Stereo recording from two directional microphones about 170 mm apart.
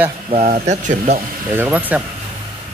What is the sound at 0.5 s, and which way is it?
Speech, 45° right (ahead or behind).